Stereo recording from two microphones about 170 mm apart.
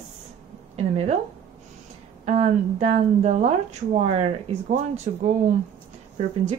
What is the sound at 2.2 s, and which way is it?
Speech, 40° right (ahead or behind).